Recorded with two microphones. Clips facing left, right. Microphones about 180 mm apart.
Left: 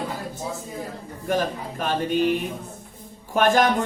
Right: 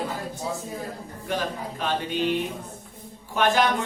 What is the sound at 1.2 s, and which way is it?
Speech, 45° left (ahead or behind).